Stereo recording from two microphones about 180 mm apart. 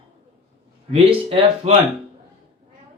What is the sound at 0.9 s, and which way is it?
Speech, 35° right (ahead or behind).